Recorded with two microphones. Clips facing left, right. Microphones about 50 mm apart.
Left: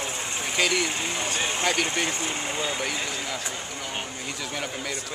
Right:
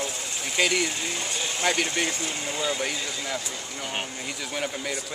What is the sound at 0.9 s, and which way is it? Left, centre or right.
Speech, left.